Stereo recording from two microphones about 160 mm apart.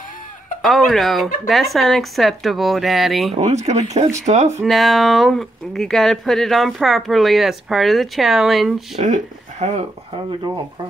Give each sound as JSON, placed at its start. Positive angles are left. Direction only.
{"t": 0.6, "sound": "speech", "side_deg": 0}
{"t": 3.3, "sound": "speech", "side_deg": -45}
{"t": 4.6, "sound": "speech", "side_deg": 0}
{"t": 9.0, "sound": "speech", "side_deg": -50}